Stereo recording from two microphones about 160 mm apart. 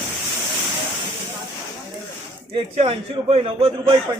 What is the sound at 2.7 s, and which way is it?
A man's voice, 35° right (ahead or behind).